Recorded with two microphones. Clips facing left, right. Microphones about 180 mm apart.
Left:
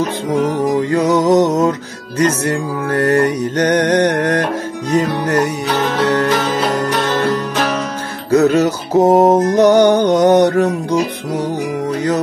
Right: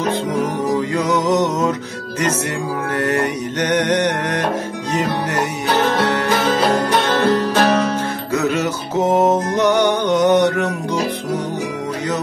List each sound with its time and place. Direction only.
1.0 s music: 40° left (ahead or behind)
3.0 s music: 35° left (ahead or behind)
8.3 s music: 40° left (ahead or behind)